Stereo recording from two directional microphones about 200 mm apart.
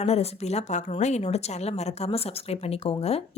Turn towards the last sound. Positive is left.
turn(degrees=30)  # may be behind; listen again after turning